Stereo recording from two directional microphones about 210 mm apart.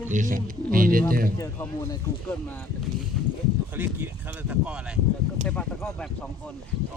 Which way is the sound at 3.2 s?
Centre (ahead or behind).